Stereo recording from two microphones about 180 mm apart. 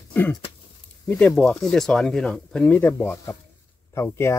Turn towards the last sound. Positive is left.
turn(degrees=15)  # may be behind; listen again after turning